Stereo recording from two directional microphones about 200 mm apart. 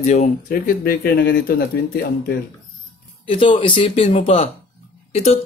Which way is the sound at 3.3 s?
25° left (ahead or behind).